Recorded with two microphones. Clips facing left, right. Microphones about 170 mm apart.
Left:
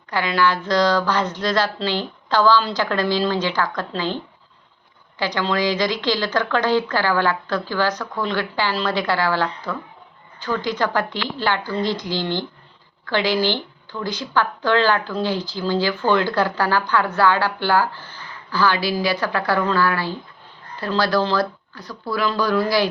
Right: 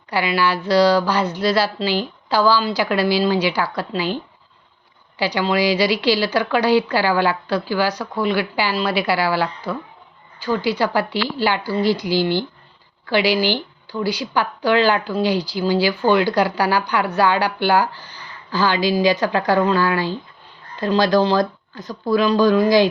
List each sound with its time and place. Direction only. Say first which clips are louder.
0.1 s speech: even; 10° right (ahead or behind)